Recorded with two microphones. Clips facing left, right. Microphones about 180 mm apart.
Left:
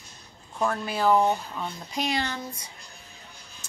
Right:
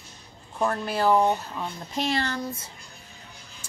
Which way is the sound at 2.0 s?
15° left (ahead or behind).